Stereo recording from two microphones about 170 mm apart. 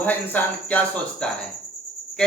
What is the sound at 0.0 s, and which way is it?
Speech, 10° left (ahead or behind).